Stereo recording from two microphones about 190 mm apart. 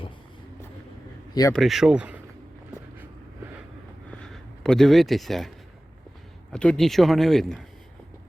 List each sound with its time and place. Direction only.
1.3 s speech: 20° left (ahead or behind)
1.5 s speech: centre (ahead or behind)
4.1 s a sound: 5° left (ahead or behind)
6.5 s speech: 5° left (ahead or behind)